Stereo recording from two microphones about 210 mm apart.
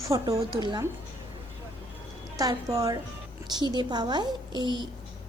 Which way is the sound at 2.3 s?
15° right (ahead or behind).